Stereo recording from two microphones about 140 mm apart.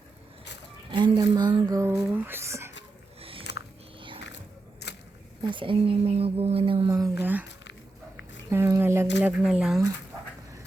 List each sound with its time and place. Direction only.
0.9 s speech: 35° right (ahead or behind); by 2.7 s 20° right (ahead or behind)
3.2 s biting: 40° right (ahead or behind)
5.4 s speech: 35° right (ahead or behind)
6.8 s speech: 20° right (ahead or behind)
8.4 s squish: 15° right (ahead or behind)
8.8 s a sound: 15° right (ahead or behind)
9.4 s a sound: 5° right (ahead or behind)